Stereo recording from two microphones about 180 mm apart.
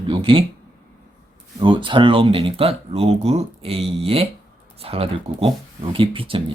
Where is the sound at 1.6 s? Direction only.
25° right (ahead or behind).